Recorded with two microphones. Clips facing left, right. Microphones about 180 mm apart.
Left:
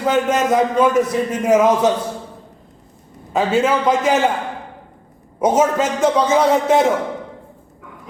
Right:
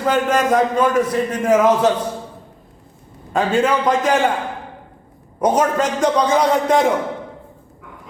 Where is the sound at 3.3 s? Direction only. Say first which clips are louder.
Even; 5° left (ahead or behind).